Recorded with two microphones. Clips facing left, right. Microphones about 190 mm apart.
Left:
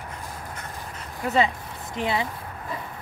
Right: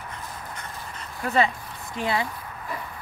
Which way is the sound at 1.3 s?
20° left (ahead or behind).